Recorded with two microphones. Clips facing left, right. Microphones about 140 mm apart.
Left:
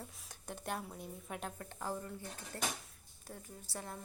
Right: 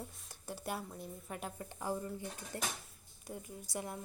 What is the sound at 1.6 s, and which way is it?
A woman's voice, 10° right (ahead or behind).